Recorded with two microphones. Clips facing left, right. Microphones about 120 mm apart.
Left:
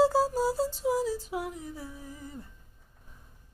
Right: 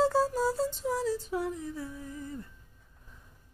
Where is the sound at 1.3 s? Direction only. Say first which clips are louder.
Right 2 dB; 20° left (ahead or behind).